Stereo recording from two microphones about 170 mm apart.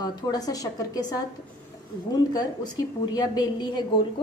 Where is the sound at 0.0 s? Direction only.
25° left (ahead or behind).